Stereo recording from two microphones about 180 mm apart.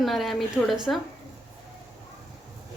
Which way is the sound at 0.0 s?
Centre (ahead or behind).